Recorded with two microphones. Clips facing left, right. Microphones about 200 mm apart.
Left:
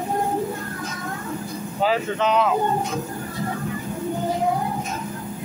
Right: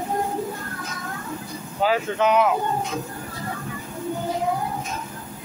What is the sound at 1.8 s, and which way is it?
Speech, 5° right (ahead or behind).